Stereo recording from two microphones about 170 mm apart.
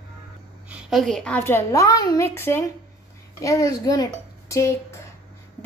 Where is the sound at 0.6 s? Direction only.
5° right (ahead or behind); by 5.0 s 20° left (ahead or behind).